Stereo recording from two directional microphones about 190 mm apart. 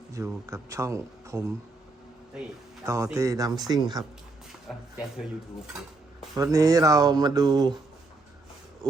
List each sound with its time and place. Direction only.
0.1 s speech: 15° right (ahead or behind)
2.8 s speech: 15° right (ahead or behind)
4.7 s speech: centre (ahead or behind)
6.3 s speech: 20° right (ahead or behind)
8.8 s speech: 20° right (ahead or behind)